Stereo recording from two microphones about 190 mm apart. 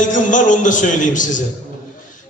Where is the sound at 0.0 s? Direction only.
40° left (ahead or behind).